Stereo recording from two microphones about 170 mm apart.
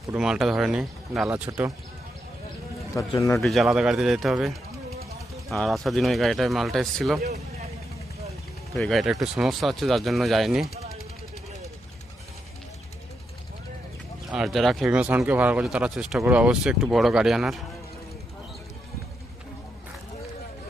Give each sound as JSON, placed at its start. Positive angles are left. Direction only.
{"t": 0.1, "sound": "speech", "side_deg": -5}
{"t": 3.2, "sound": "a man's voice", "side_deg": 15}
{"t": 3.4, "sound": "speech", "side_deg": 0}
{"t": 8.7, "sound": "speech", "side_deg": 0}
{"t": 14.3, "sound": "speech", "side_deg": -5}